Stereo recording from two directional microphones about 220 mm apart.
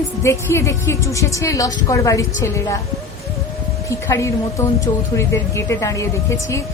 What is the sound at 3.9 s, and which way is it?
A woman's voice, 15° left (ahead or behind).